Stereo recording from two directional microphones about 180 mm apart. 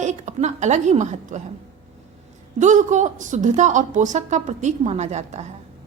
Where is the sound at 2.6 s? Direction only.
45° right (ahead or behind).